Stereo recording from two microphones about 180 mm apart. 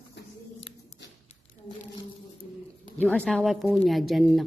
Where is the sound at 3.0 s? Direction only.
5° left (ahead or behind).